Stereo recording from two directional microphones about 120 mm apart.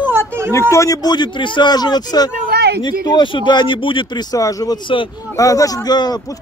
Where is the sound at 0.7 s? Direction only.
25° left (ahead or behind); by 5.0 s 40° left (ahead or behind).